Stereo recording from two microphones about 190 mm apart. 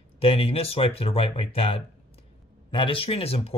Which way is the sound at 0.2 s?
30° left (ahead or behind).